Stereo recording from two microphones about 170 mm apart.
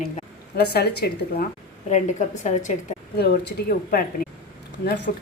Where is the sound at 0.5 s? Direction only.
70° left (ahead or behind).